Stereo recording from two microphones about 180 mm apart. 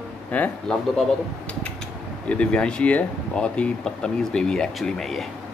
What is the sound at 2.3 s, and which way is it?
Speech, 5° left (ahead or behind).